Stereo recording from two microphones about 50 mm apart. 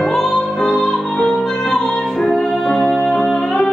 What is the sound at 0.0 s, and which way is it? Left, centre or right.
Music, centre.